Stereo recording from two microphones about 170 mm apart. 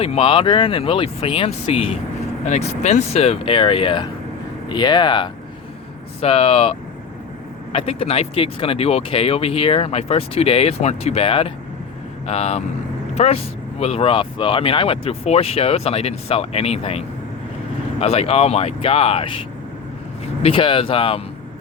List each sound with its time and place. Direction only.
0.0 s speech: 35° left (ahead or behind)
18.0 s speech: 35° left (ahead or behind)